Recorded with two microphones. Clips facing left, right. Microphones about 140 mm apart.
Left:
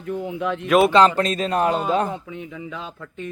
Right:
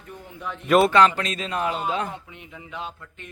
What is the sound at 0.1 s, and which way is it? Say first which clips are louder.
Speech: left 11 dB; 90° left.